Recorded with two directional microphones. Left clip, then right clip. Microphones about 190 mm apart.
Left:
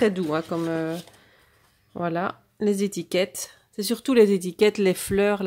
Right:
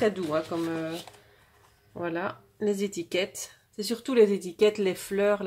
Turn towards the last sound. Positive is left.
turn(degrees=45)  # may be behind; listen again after turning